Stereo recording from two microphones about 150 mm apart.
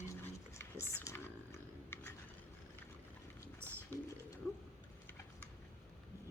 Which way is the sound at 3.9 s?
10° left (ahead or behind).